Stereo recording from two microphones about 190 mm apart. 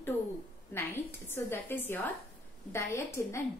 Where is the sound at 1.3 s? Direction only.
10° left (ahead or behind).